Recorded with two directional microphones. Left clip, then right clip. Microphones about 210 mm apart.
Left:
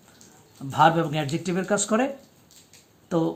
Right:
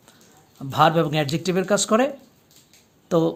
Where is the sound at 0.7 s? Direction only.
45° right (ahead or behind).